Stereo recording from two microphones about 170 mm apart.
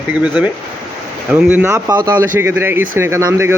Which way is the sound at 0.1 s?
10° right (ahead or behind).